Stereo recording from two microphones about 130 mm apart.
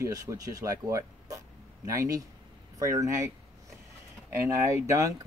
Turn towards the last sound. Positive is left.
turn(degrees=-25)  # may be behind; listen again after turning